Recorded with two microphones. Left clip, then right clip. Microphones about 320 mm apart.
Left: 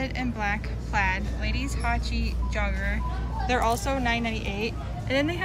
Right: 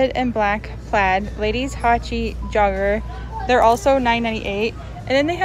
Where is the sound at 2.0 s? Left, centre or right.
Centre.